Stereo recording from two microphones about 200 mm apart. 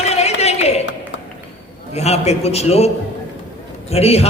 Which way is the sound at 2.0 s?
30° left (ahead or behind).